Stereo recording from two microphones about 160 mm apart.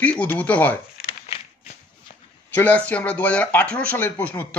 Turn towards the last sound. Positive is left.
turn(degrees=10)  # may be behind; listen again after turning